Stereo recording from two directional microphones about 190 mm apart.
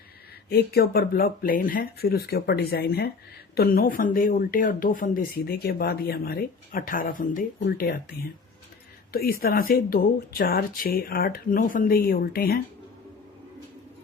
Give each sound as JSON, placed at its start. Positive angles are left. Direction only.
{"t": 0.5, "sound": "speech", "side_deg": 55}
{"t": 9.1, "sound": "speech", "side_deg": 55}